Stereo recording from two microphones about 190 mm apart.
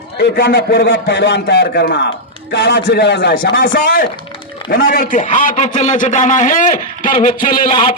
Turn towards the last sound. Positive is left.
turn(degrees=25)  # may be behind; listen again after turning